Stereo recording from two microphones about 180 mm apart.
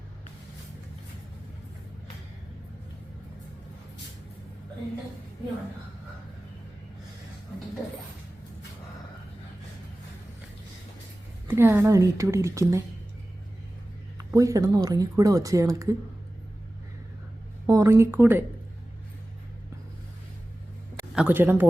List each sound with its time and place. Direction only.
11.4 s speech: 10° right (ahead or behind)
14.2 s speech: 15° right (ahead or behind)
17.7 s speech: 15° right (ahead or behind)
21.2 s speech: 10° right (ahead or behind)